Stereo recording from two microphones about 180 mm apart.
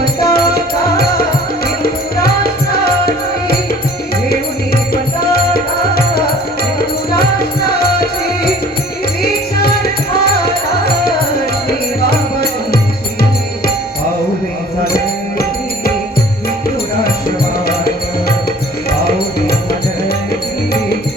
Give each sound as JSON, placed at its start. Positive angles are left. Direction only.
{"t": 0.0, "sound": "music", "side_deg": 55}
{"t": 6.7, "sound": "music", "side_deg": 60}
{"t": 12.1, "sound": "music", "side_deg": 60}
{"t": 14.9, "sound": "music", "side_deg": 55}
{"t": 18.9, "sound": "music", "side_deg": 60}